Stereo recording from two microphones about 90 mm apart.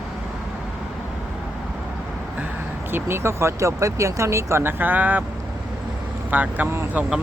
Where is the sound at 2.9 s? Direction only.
25° right (ahead or behind).